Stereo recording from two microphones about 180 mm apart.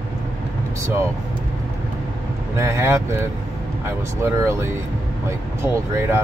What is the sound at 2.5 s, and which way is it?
Speech, 15° right (ahead or behind).